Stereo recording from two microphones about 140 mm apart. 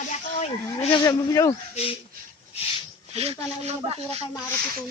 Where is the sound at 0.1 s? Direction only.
50° left (ahead or behind).